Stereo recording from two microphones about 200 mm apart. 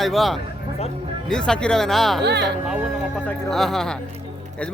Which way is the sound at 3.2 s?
Centre (ahead or behind).